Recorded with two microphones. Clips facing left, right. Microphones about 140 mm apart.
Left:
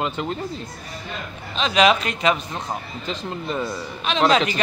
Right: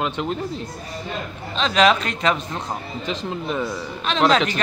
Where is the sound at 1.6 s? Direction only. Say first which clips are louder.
Even; 5° left (ahead or behind).